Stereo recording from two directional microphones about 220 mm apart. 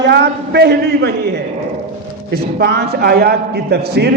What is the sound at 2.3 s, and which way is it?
A woman's voice, 50° right (ahead or behind).